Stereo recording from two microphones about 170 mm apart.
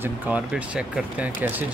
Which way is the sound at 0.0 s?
10° right (ahead or behind).